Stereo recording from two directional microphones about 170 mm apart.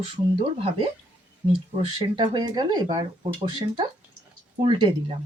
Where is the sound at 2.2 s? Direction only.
25° right (ahead or behind).